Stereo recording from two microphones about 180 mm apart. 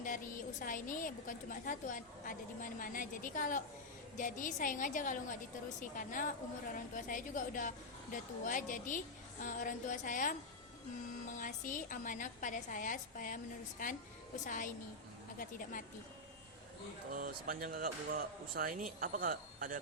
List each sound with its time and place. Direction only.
0.6 s a woman's voice: 45° left (ahead or behind)
11.3 s a woman's voice: 45° left (ahead or behind)
17.1 s speech: 50° right (ahead or behind)